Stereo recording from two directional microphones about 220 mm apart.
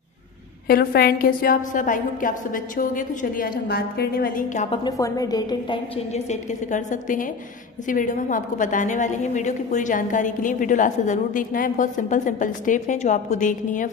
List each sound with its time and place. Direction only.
0.7 s a woman's voice: 45° left (ahead or behind)
4.6 s a woman's voice: 15° left (ahead or behind)
6.1 s a woman's voice: 30° left (ahead or behind)